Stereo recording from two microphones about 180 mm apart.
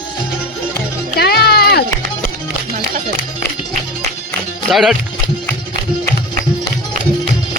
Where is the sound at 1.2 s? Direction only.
60° left (ahead or behind).